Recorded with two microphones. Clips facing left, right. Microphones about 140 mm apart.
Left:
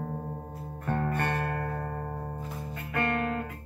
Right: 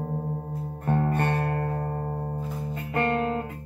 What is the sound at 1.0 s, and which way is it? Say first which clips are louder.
Music: right 4 dB; 30° right (ahead or behind).